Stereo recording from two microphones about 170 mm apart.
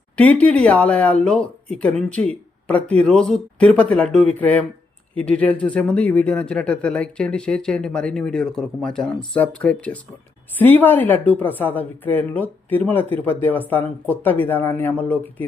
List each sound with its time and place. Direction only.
0.2 s speech: 10° left (ahead or behind)